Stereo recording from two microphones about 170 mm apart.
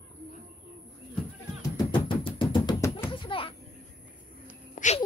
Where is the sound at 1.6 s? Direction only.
25° left (ahead or behind).